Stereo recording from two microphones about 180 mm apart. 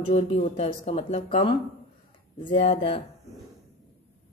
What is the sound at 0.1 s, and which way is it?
A woman's voice, 35° left (ahead or behind).